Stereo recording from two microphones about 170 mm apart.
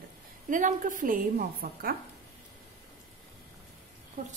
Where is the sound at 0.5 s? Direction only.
50° right (ahead or behind).